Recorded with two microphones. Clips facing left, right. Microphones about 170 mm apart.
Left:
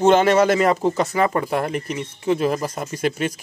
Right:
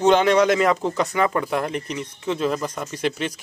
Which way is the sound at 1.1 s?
40° left (ahead or behind).